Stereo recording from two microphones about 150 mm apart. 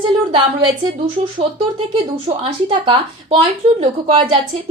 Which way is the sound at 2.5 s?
30° right (ahead or behind).